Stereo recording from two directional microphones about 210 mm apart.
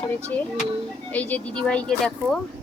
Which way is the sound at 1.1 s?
5° left (ahead or behind).